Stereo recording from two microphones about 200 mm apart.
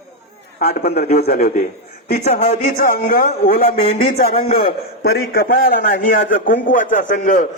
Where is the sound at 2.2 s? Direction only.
30° left (ahead or behind); by 4.3 s 50° left (ahead or behind).